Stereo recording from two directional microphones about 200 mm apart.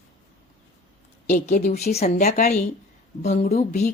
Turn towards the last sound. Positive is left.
turn(degrees=30)  # may be behind; listen again after turning